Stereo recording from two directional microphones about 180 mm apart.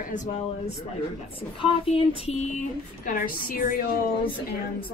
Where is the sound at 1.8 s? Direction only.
35° left (ahead or behind).